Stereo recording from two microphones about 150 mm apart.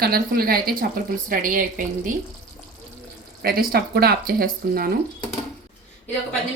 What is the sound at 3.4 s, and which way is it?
A woman's voice, 80° right.